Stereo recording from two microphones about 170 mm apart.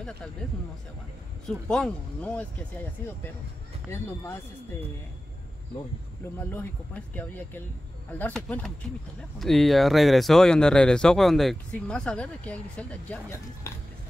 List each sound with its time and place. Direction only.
1.7 s speech: 5° left (ahead or behind)
6.5 s speech: 10° left (ahead or behind)